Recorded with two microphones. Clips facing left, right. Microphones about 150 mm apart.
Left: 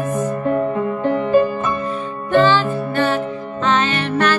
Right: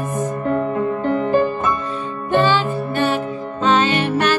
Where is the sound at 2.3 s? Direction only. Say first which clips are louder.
Left 2 dB; 15° right (ahead or behind).